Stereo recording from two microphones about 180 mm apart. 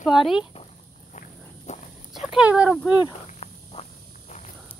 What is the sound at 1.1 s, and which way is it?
Walk, 40° left (ahead or behind).